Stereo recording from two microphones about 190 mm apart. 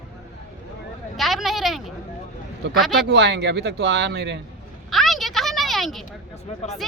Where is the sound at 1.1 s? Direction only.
Centre (ahead or behind).